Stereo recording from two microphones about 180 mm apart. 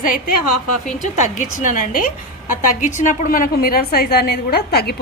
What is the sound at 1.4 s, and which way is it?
A woman's voice, 50° left (ahead or behind).